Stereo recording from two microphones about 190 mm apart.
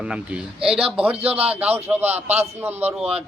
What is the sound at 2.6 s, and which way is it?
Speech, 10° right (ahead or behind).